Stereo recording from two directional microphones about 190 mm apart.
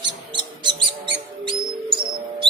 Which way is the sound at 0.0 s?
25° right (ahead or behind).